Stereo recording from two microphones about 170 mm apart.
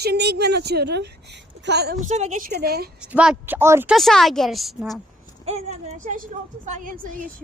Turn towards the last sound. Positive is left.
turn(degrees=-45)  # may be behind; listen again after turning